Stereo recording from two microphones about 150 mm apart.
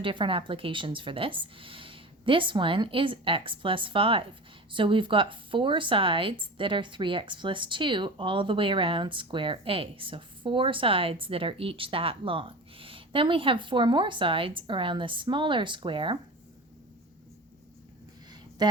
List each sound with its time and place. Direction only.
0.0 s a woman's voice: 35° right (ahead or behind)
18.6 s speech: 25° right (ahead or behind)